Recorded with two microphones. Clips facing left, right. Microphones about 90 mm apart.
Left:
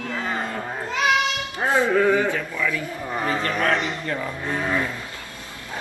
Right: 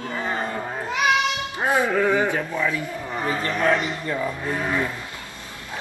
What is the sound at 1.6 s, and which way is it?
Music, 15° right (ahead or behind).